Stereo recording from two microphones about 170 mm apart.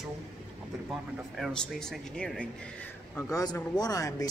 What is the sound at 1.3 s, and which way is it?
Speech, centre (ahead or behind).